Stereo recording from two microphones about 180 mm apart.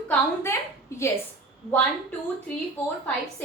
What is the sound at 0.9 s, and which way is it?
Speech, 15° left (ahead or behind).